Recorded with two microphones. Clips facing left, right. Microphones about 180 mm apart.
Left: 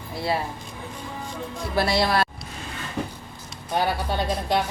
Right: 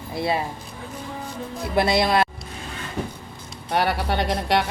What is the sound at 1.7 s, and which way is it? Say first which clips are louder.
Speech: right 3 dB; 20° right (ahead or behind).